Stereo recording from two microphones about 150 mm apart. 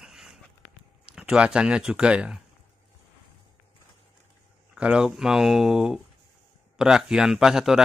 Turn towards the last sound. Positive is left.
turn(degrees=-5)  # may be behind; listen again after turning